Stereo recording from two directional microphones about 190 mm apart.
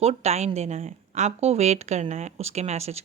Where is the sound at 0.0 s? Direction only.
35° right (ahead or behind).